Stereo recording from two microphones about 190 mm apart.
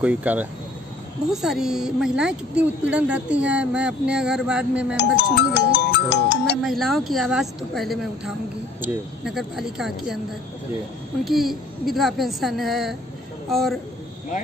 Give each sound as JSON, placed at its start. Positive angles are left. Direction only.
{"t": 0.0, "sound": "speech", "side_deg": -10}
{"t": 4.9, "sound": "speech", "side_deg": 65}
{"t": 6.6, "sound": "speech", "side_deg": 0}
{"t": 11.2, "sound": "speech", "side_deg": 0}